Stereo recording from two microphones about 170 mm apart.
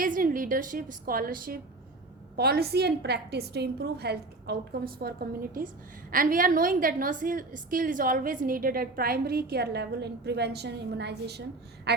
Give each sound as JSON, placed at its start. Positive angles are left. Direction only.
{"t": 0.0, "sound": "a woman's voice", "side_deg": -55}
{"t": 2.3, "sound": "a woman's voice", "side_deg": -70}
{"t": 11.9, "sound": "a sound", "side_deg": -75}